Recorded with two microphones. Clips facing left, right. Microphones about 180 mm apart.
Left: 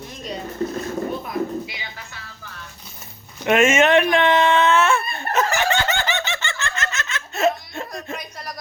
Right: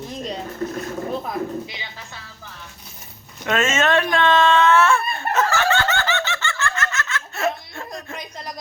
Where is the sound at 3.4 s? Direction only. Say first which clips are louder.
Left 4 dB; 15° left (ahead or behind).